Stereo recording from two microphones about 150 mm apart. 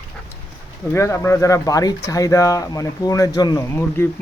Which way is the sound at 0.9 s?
20° left (ahead or behind).